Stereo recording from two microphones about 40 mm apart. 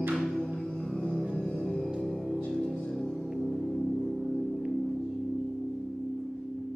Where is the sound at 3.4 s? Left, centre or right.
Centre.